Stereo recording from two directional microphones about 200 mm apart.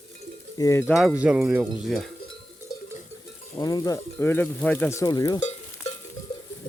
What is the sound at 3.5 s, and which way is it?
Speech, 20° left (ahead or behind).